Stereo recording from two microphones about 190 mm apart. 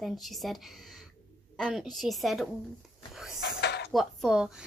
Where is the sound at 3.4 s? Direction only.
60° left (ahead or behind).